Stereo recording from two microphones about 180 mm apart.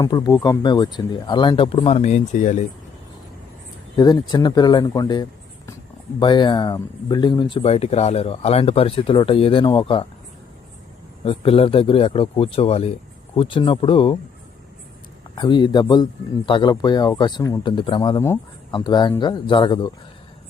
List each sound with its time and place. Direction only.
0.0 s speech: 20° left (ahead or behind); by 2.6 s 45° left (ahead or behind)
3.9 s speech: 20° left (ahead or behind)
7.5 s speech: 35° left (ahead or behind)
11.3 s speech: 30° left (ahead or behind)
15.4 s speech: 25° left (ahead or behind)